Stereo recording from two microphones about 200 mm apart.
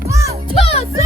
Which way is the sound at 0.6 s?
30° left (ahead or behind).